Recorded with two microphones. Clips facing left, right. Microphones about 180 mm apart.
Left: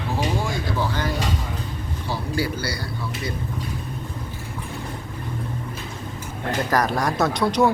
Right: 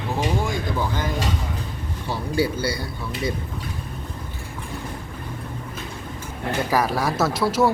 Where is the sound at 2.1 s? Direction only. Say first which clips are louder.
Right 3 dB; 25° right (ahead or behind).